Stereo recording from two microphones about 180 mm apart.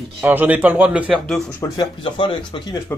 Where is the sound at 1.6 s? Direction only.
25° left (ahead or behind).